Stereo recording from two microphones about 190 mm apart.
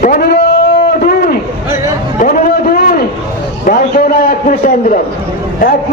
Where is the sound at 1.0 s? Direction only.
55° left (ahead or behind).